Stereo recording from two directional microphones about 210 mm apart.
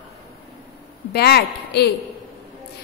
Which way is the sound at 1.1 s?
50° left (ahead or behind).